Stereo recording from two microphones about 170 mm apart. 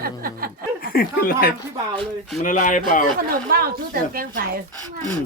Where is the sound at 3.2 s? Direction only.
60° right (ahead or behind).